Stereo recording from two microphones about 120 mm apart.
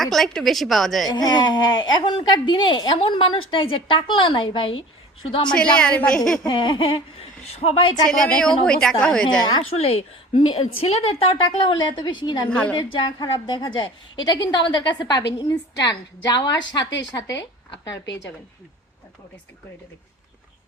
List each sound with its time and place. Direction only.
0.0 s speech: 5° left (ahead or behind)
1.0 s a woman's voice: 35° left (ahead or behind)
5.5 s a woman's voice: 10° left (ahead or behind)
6.4 s a woman's voice: 40° left (ahead or behind)
8.1 s a woman's voice: 5° left (ahead or behind)
10.5 s a woman's voice: 55° left (ahead or behind)
12.5 s a woman's voice: 10° left (ahead or behind)
12.7 s a woman's voice: 40° left (ahead or behind)